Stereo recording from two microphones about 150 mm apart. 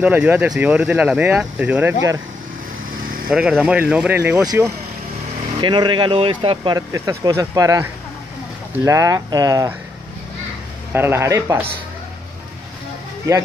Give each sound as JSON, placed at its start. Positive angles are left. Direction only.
{"t": 0.0, "sound": "speech", "side_deg": -10}
{"t": 3.3, "sound": "speech", "side_deg": -5}
{"t": 5.6, "sound": "speech", "side_deg": -30}
{"t": 6.9, "sound": "speech", "side_deg": -20}
{"t": 10.9, "sound": "speech", "side_deg": -15}